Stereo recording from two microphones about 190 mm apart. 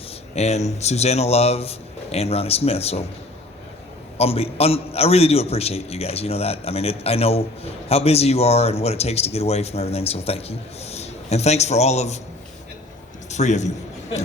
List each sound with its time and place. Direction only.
0.3 s a man's voice: 35° left (ahead or behind)
4.2 s a man's voice: 30° left (ahead or behind)
13.3 s a man's voice: 35° left (ahead or behind)